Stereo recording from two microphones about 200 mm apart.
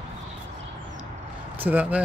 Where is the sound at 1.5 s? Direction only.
10° right (ahead or behind).